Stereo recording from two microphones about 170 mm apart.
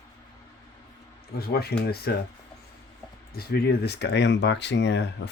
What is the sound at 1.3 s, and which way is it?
Speech, 65° left (ahead or behind).